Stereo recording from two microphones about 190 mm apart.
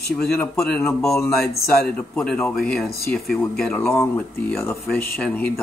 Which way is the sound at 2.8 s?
55° left (ahead or behind).